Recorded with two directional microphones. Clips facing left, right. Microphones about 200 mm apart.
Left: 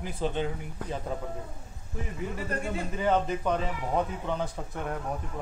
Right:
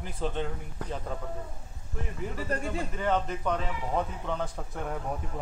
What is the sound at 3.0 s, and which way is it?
A man's voice, 10° left (ahead or behind).